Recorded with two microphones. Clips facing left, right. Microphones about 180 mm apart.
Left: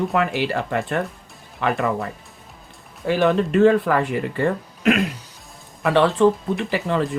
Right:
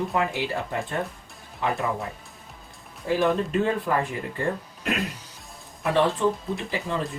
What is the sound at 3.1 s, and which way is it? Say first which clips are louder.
Speech: left 4 dB; 90° left.